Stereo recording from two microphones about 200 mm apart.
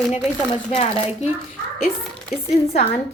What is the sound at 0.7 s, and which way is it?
Speech, 30° left (ahead or behind).